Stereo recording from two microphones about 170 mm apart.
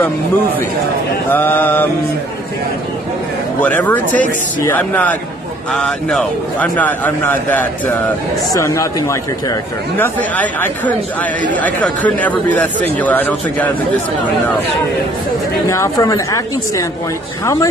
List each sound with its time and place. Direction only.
1.3 s a man's voice: 10° left (ahead or behind)
3.6 s a man's voice: 10° left (ahead or behind)
15.7 s a man's voice: 20° left (ahead or behind)